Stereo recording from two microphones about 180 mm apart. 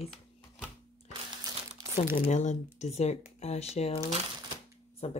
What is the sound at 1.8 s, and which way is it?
Crumpling, 25° right (ahead or behind).